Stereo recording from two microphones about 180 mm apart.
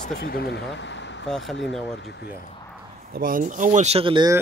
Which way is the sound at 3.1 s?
50° right (ahead or behind).